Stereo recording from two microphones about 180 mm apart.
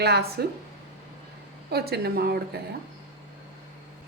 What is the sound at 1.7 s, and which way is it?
Speech, 60° right (ahead or behind).